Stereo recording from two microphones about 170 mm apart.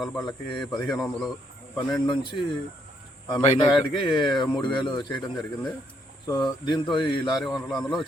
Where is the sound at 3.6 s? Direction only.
25° left (ahead or behind).